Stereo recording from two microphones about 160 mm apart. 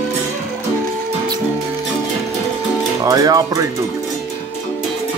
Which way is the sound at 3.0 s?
20° right (ahead or behind).